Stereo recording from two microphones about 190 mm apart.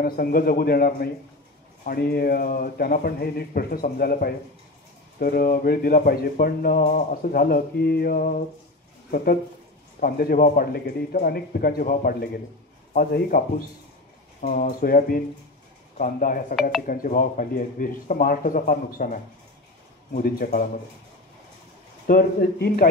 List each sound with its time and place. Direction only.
0.0 s speech: 50° left (ahead or behind)
22.0 s speech: 50° left (ahead or behind)